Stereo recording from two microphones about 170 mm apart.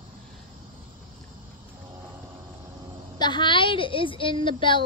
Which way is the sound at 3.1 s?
25° left (ahead or behind).